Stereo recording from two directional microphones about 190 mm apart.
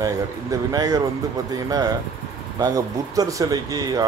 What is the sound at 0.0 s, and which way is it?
Speech, 20° right (ahead or behind).